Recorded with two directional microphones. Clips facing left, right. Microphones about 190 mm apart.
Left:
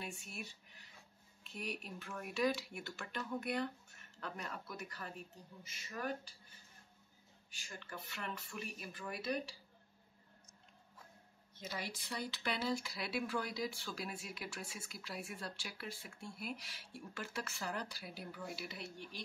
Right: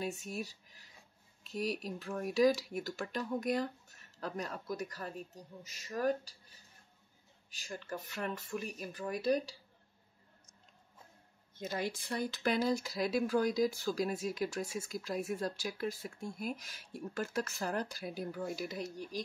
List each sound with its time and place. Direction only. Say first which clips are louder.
0.0 s speech: right 9 dB; 40° right (ahead or behind)
7.5 s speech: right 8 dB; 40° right (ahead or behind)
11.5 s speech: right 8 dB; 50° right (ahead or behind)